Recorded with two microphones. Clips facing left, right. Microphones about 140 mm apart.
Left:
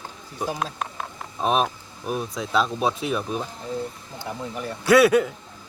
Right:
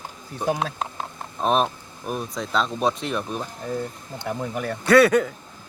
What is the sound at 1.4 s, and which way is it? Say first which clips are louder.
Speech: right 1 dB; centre (ahead or behind).